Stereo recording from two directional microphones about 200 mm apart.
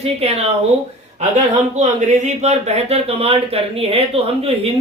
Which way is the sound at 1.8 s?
35° right (ahead or behind).